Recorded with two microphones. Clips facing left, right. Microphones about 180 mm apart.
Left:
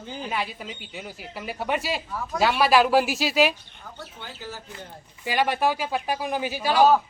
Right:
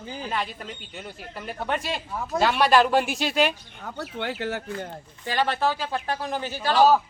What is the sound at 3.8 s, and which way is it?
Speech, 75° right (ahead or behind).